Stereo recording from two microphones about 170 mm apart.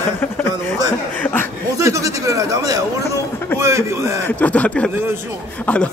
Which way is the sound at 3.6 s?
15° right (ahead or behind).